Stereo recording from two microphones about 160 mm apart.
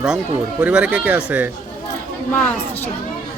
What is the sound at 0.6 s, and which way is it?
Speech, 10° right (ahead or behind).